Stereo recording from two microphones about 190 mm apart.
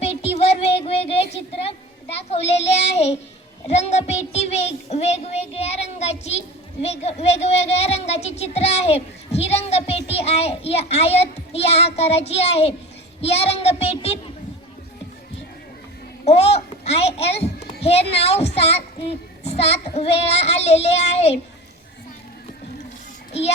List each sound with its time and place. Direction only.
0.0 s a sound: 35° left (ahead or behind)
1.6 s child singing: 30° left (ahead or behind)
6.8 s speech: 35° left (ahead or behind)
7.8 s child singing: 35° left (ahead or behind)
13.2 s a child's voice: 35° left (ahead or behind)
16.2 s a child's voice: 35° left (ahead or behind)